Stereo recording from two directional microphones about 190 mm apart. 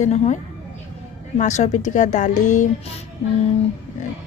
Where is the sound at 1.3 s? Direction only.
40° left (ahead or behind).